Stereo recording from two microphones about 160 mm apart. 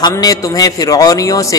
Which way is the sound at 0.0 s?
25° left (ahead or behind).